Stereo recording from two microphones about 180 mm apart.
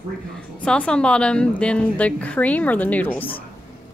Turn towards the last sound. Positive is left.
turn(degrees=10)  # may be behind; listen again after turning